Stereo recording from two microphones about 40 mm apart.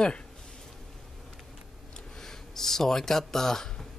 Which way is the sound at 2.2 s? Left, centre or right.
Centre.